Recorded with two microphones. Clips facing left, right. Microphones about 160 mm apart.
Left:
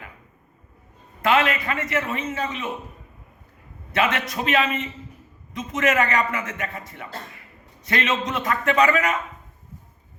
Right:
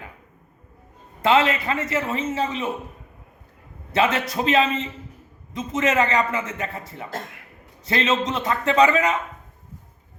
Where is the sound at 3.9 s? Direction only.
30° right (ahead or behind).